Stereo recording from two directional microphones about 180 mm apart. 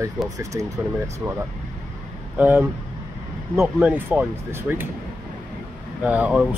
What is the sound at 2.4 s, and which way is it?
Speech, 10° right (ahead or behind).